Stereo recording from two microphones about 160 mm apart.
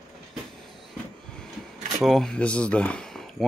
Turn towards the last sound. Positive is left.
turn(degrees=0)  # may be behind; listen again after turning